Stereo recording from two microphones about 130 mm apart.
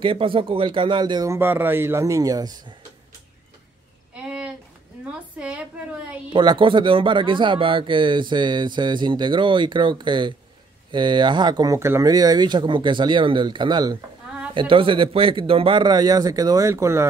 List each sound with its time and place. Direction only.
0.0 s speech: 40° right (ahead or behind)
1.3 s speech: 15° right (ahead or behind)
4.1 s a sound: 10° right (ahead or behind)
5.4 s a woman's voice: 10° right (ahead or behind)
6.3 s speech: 40° right (ahead or behind); by 17.0 s 20° right (ahead or behind)